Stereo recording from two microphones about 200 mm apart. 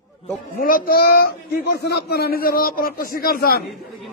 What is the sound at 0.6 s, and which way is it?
Speech, 45° left (ahead or behind).